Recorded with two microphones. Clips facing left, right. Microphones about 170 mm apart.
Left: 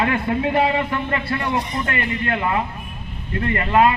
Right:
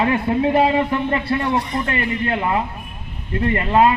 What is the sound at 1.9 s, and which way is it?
Speech, 25° right (ahead or behind).